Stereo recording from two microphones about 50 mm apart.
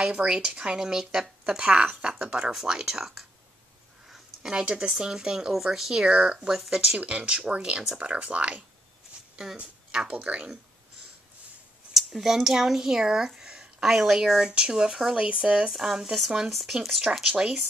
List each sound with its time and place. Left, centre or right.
0.0 s speech: right
6.9 s speech: right
11.9 s speech: centre
15.1 s speech: right
15.7 s speech: centre